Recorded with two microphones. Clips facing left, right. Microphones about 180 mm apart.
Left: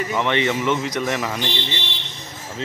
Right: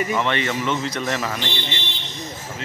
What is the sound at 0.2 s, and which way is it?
A man's voice, 15° left (ahead or behind).